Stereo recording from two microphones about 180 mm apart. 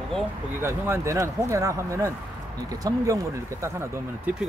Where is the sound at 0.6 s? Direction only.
15° right (ahead or behind).